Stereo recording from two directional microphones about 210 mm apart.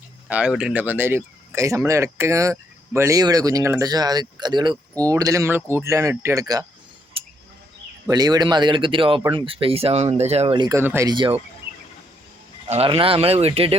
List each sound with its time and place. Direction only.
0.3 s speech: 5° right (ahead or behind)
7.1 s a sound: 25° right (ahead or behind)
8.0 s speech: 20° right (ahead or behind)
12.6 s speech: 30° right (ahead or behind)